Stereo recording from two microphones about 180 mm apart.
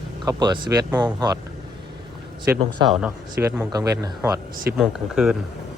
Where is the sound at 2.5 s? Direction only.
15° right (ahead or behind).